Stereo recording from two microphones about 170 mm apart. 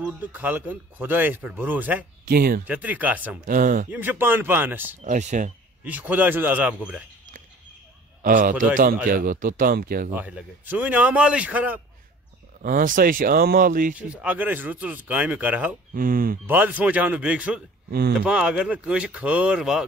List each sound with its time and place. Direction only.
0.0 s speech: 10° right (ahead or behind)
2.2 s speech: 60° right (ahead or behind)
2.6 s speech: 10° right (ahead or behind)
3.4 s speech: 55° right (ahead or behind)
3.9 s speech: 10° right (ahead or behind)
5.0 s speech: 45° right (ahead or behind)
5.9 s speech: 10° right (ahead or behind)
8.2 s a man's voice: 55° right (ahead or behind)
10.1 s speech: 10° right (ahead or behind)
12.6 s speech: 55° right (ahead or behind)
14.1 s speech: 10° right (ahead or behind)
15.9 s speech: 55° right (ahead or behind)
16.4 s speech: 10° right (ahead or behind)